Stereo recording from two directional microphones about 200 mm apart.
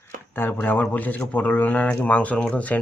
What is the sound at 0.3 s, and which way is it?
Speech, 10° left (ahead or behind).